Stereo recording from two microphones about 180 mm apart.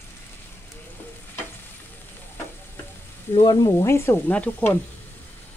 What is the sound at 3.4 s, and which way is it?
Stir, 20° left (ahead or behind).